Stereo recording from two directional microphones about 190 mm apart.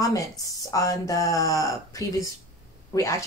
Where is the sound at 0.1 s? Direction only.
20° left (ahead or behind).